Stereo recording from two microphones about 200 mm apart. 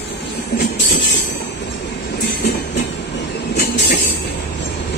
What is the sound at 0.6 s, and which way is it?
Music, 60° left (ahead or behind).